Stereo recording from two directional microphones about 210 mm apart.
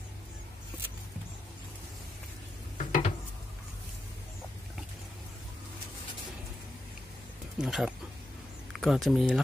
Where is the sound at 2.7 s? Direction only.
40° left (ahead or behind).